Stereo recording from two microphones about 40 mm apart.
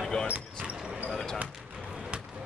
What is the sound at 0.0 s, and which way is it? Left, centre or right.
Basketball bounce, centre.